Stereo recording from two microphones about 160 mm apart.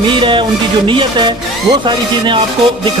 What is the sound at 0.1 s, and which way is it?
Speech, 30° right (ahead or behind).